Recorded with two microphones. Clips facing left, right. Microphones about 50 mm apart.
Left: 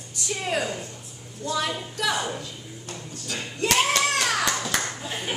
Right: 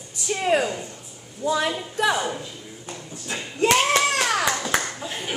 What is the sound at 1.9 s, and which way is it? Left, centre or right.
Speech, right.